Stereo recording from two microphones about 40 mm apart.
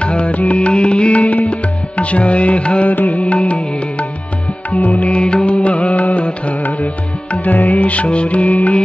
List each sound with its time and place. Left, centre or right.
0.0 s music: left
0.6 s music: left
4.6 s music: left